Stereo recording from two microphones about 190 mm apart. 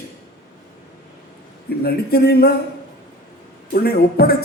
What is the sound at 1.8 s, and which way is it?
Speech, 55° left (ahead or behind).